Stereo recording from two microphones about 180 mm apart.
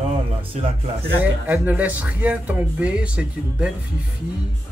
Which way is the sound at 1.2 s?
10° right (ahead or behind).